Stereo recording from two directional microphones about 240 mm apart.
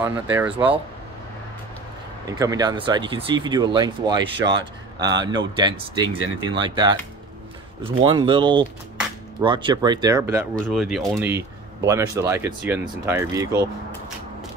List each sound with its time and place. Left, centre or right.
0.0 s speech: centre
2.2 s speech: centre
11.1 s speech: centre